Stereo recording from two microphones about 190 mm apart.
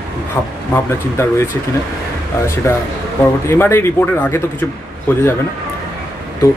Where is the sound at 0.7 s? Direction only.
15° left (ahead or behind).